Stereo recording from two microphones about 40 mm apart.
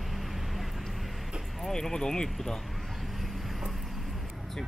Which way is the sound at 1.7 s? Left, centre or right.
Centre.